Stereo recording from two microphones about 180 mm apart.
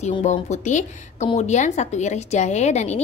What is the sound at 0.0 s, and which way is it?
A woman's voice, 40° left (ahead or behind).